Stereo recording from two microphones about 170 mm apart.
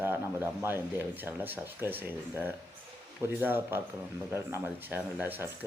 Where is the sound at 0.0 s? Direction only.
15° right (ahead or behind).